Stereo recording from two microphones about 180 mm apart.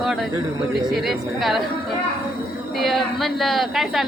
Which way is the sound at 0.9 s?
Centre (ahead or behind).